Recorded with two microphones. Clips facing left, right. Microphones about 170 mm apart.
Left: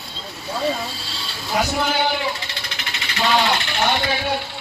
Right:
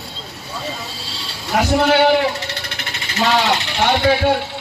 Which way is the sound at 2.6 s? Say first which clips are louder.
Right 2 dB; 50° right (ahead or behind).